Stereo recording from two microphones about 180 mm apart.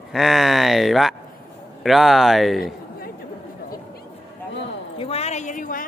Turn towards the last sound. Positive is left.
turn(degrees=50)  # may be behind; listen again after turning